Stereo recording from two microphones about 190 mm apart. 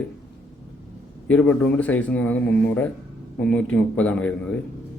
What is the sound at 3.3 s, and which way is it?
A man's voice, 5° left (ahead or behind).